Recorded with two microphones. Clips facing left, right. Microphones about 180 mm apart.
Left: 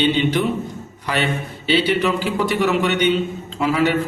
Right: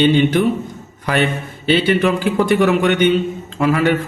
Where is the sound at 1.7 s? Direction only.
50° right (ahead or behind).